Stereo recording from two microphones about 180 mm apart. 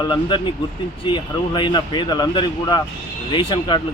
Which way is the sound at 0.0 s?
25° left (ahead or behind).